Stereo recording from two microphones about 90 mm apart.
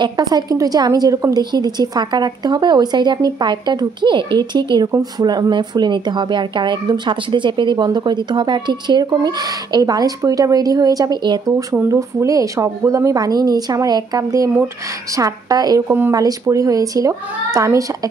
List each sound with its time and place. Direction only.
0.0 s speech: 50° right (ahead or behind)
11.9 s a woman's voice: 35° right (ahead or behind)